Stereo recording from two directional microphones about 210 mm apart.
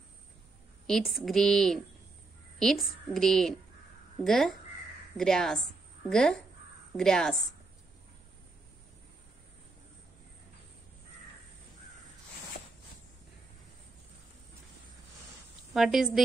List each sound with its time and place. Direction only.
0.8 s a woman's voice: centre (ahead or behind)
15.7 s a woman's voice: centre (ahead or behind)